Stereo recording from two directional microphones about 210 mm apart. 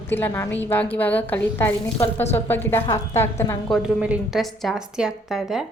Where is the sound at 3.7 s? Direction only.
Centre (ahead or behind).